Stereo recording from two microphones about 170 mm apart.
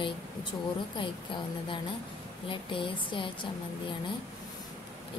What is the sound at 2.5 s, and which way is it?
Speech, 30° left (ahead or behind).